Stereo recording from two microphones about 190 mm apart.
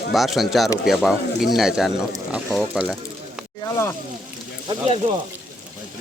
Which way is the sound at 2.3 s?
Centre (ahead or behind).